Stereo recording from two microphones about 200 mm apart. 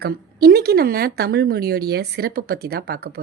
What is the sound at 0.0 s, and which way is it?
Speech, 50° right (ahead or behind).